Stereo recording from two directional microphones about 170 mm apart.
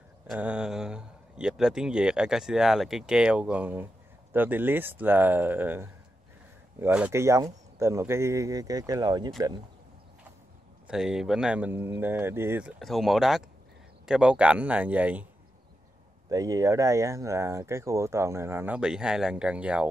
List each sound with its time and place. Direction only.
0.3 s a man's voice: 5° right (ahead or behind); by 9.3 s 20° right (ahead or behind)
10.9 s a man's voice: 5° right (ahead or behind)
16.3 s speech: 20° right (ahead or behind)